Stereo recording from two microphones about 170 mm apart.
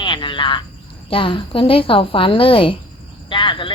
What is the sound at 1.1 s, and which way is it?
A woman's voice, 30° left (ahead or behind).